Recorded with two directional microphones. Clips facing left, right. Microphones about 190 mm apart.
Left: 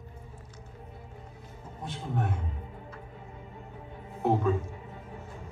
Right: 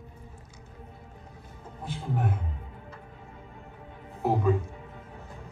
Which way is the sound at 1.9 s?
5° right (ahead or behind).